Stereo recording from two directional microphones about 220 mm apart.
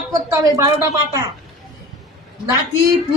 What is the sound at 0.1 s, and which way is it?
A woman's voice, 15° right (ahead or behind).